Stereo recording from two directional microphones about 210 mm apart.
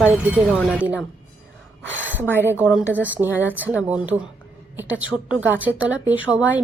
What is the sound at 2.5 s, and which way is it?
A woman's voice, 5° right (ahead or behind).